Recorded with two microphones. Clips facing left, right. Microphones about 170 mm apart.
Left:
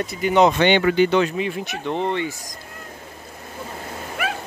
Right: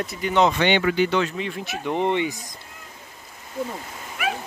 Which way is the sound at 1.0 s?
20° left (ahead or behind).